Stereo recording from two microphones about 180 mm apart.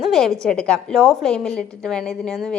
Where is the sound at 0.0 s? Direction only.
Centre (ahead or behind).